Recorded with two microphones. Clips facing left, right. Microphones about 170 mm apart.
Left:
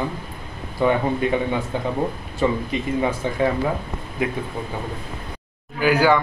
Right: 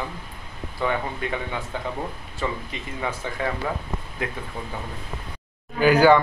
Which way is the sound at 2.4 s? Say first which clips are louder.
Left 8 dB; 20° left (ahead or behind).